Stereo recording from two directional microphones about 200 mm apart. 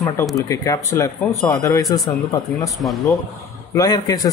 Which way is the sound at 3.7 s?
15° left (ahead or behind).